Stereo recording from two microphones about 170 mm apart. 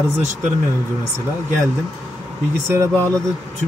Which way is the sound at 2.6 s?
15° right (ahead or behind).